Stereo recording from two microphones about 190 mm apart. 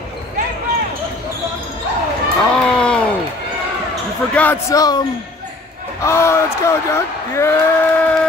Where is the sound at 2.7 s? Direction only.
5° left (ahead or behind).